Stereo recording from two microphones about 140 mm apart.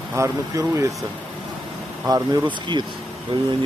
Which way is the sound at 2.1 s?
25° right (ahead or behind).